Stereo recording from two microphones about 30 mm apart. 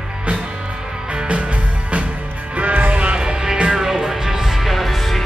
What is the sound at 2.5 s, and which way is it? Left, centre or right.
Music, right.